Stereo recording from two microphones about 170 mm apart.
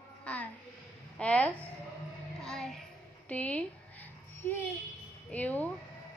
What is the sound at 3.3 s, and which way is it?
Babbling, 10° left (ahead or behind).